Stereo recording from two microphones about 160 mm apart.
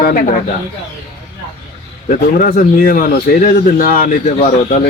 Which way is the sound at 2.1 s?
60° left (ahead or behind).